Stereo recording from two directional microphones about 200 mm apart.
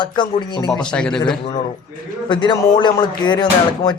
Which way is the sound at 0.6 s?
5° left (ahead or behind).